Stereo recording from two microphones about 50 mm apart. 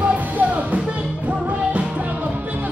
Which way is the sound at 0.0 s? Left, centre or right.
Right.